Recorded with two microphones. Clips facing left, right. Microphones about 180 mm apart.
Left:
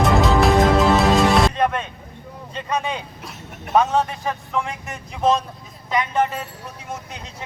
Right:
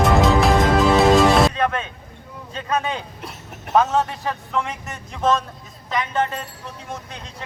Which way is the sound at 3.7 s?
Centre (ahead or behind).